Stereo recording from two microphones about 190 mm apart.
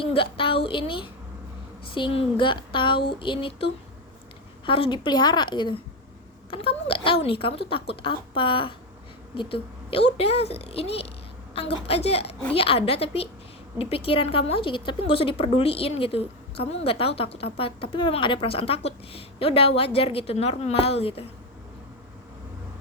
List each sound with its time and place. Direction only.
0.0 s a woman's voice: 30° left (ahead or behind)